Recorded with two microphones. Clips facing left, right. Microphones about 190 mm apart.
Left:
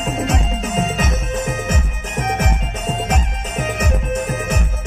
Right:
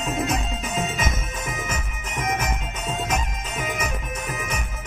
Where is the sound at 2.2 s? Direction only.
75° left (ahead or behind).